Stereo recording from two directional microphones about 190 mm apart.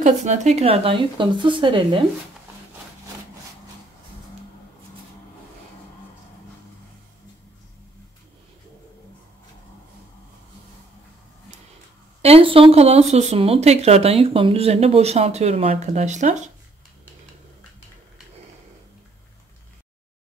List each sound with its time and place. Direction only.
0.0 s speech: 40° right (ahead or behind)
12.2 s speech: 30° right (ahead or behind)